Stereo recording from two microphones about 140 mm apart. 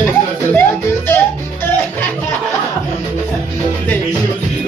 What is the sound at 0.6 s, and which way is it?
Music, 15° left (ahead or behind).